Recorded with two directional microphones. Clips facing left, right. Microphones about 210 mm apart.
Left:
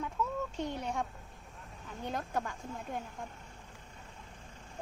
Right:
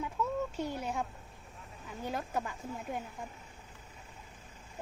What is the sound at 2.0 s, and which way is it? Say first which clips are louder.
Speech: even; 5° right (ahead or behind).